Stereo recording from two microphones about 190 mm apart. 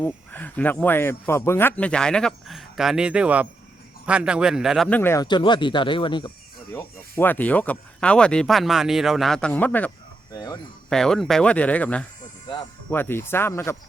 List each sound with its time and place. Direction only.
0.0 s speech: 10° left (ahead or behind); by 6.3 s 25° left (ahead or behind)
6.7 s speech: 10° left (ahead or behind)
10.3 s speech: 20° left (ahead or behind)
10.8 s speech: 5° left (ahead or behind)